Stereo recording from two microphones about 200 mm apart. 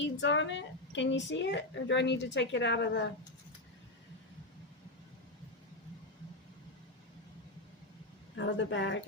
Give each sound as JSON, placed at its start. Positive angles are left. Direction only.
{"t": 0.2, "sound": "a woman's voice", "side_deg": 65}
{"t": 8.4, "sound": "a woman's voice", "side_deg": 65}